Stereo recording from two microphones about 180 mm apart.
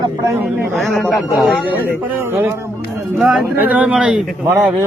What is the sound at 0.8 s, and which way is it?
A man's voice, centre (ahead or behind).